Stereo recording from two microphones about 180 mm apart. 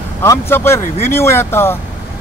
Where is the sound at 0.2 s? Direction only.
15° left (ahead or behind).